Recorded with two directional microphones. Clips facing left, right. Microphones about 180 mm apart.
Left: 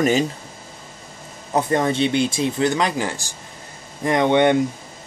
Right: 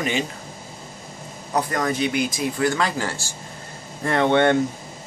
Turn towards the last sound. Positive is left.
turn(degrees=15)  # may be behind; listen again after turning